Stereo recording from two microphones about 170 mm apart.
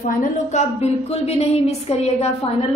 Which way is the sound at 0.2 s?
45° left (ahead or behind).